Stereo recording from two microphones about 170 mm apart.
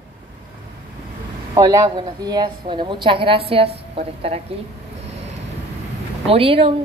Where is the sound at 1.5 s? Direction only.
20° right (ahead or behind); by 4.4 s 35° right (ahead or behind).